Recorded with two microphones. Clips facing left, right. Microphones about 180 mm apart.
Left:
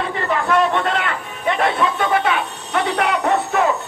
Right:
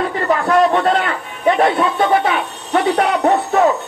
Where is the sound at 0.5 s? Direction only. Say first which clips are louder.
Right 4 dB; 40° right (ahead or behind).